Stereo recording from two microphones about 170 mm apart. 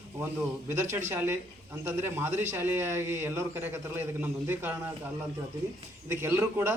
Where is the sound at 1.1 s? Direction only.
15° right (ahead or behind).